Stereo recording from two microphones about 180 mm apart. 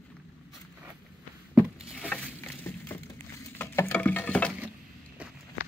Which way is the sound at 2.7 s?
15° left (ahead or behind).